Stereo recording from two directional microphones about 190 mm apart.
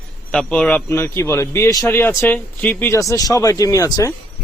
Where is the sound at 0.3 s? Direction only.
5° left (ahead or behind).